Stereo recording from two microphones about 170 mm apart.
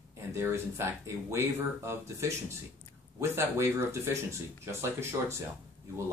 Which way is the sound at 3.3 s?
15° right (ahead or behind).